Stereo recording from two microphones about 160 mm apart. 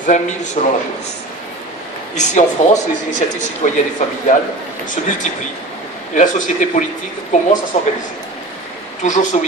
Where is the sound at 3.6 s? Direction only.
50° left (ahead or behind).